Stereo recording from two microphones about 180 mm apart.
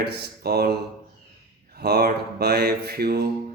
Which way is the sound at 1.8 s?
60° right (ahead or behind).